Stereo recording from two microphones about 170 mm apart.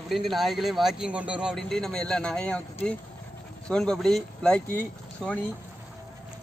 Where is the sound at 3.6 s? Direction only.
5° left (ahead or behind).